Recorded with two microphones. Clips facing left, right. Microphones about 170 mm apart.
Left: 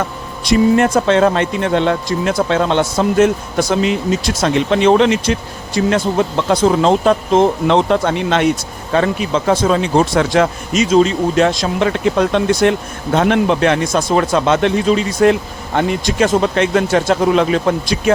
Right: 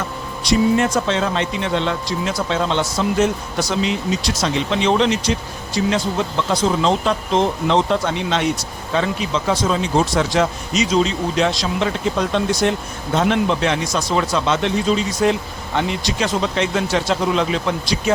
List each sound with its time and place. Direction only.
0.4 s speech: 55° left (ahead or behind)